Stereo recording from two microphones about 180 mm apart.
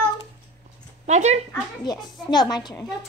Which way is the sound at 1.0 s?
40° right (ahead or behind).